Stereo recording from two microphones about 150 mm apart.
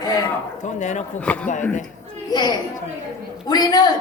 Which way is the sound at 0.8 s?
55° left (ahead or behind).